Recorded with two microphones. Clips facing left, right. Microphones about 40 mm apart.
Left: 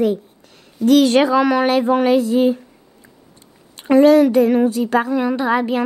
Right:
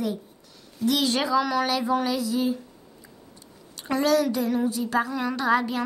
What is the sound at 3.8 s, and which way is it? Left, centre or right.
A woman's voice, left.